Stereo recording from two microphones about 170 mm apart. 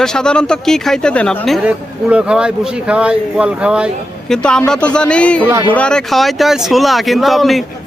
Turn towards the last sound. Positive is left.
turn(degrees=0)  # may be behind; listen again after turning